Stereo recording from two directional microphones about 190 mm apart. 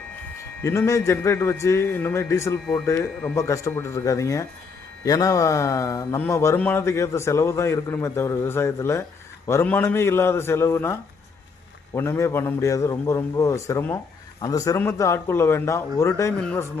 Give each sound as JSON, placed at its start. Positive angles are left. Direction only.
{"t": 0.6, "sound": "a man's voice", "side_deg": 15}
{"t": 11.9, "sound": "a man's voice", "side_deg": 15}